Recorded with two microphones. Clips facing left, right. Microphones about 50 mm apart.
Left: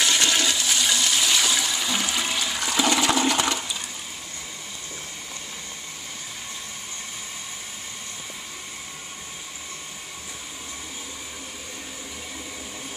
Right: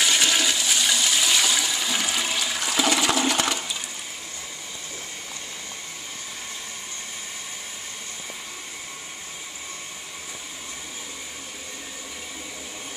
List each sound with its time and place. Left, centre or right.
0.0 s toilet flush: centre